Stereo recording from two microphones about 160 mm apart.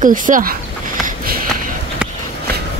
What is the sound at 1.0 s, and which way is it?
Sniff, 65° right (ahead or behind).